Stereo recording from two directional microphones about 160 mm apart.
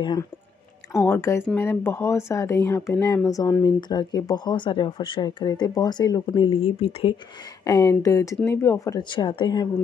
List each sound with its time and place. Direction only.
0.0 s speech: 25° left (ahead or behind)
7.6 s speech: 20° left (ahead or behind)